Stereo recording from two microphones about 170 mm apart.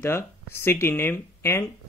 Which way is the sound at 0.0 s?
15° left (ahead or behind).